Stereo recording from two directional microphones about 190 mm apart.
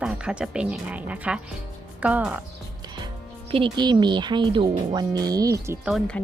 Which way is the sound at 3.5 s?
25° right (ahead or behind).